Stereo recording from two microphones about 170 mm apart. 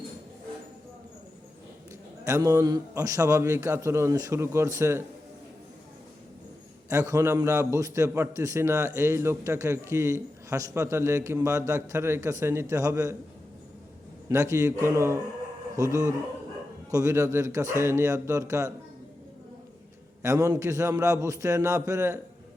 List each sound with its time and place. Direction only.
2.2 s a man's voice: 20° right (ahead or behind)
6.9 s a man's voice: 20° right (ahead or behind)
14.3 s a man's voice: 20° right (ahead or behind)
20.2 s a man's voice: 20° right (ahead or behind)